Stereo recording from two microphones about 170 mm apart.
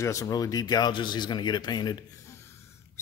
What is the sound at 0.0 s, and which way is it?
Speech, 20° left (ahead or behind).